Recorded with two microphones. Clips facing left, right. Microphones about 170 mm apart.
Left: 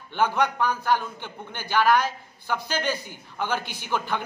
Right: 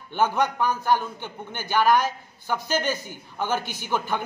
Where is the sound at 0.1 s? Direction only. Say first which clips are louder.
Right 1 dB; 10° right (ahead or behind).